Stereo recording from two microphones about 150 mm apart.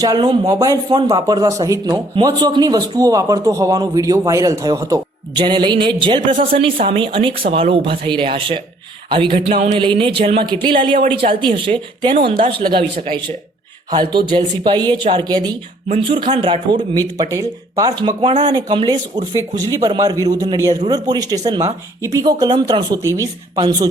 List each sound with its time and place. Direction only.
0.0 s a man's voice: 30° right (ahead or behind)
9.5 s speech: 55° right (ahead or behind)
9.7 s speech: 35° right (ahead or behind)
13.9 s speech: 30° right (ahead or behind)
16.9 s a man's voice: 25° right (ahead or behind)